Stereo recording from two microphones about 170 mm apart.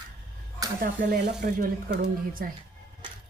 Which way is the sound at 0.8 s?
55° right (ahead or behind).